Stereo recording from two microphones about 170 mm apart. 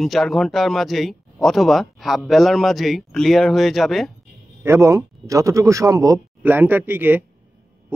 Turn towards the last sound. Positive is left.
turn(degrees=-10)  # may be behind; listen again after turning